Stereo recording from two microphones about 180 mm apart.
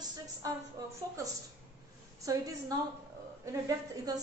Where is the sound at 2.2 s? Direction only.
20° right (ahead or behind).